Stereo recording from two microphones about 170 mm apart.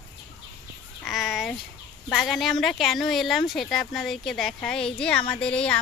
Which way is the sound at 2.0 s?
Centre (ahead or behind).